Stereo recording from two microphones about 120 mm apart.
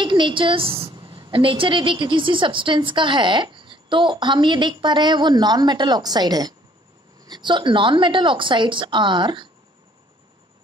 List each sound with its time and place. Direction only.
0.0 s a woman's voice: 40° right (ahead or behind)